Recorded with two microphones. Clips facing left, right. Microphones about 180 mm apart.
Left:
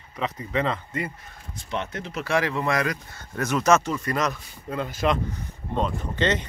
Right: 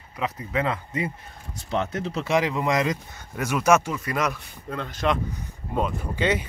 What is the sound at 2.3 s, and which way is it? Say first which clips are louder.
Speech: right 1 dB; 15° right (ahead or behind).